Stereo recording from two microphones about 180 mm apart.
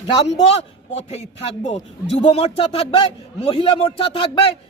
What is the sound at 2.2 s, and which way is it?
A man's voice, 30° left (ahead or behind).